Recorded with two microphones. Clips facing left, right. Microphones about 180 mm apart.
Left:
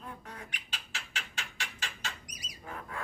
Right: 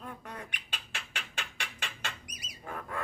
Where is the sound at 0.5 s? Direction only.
60° right (ahead or behind).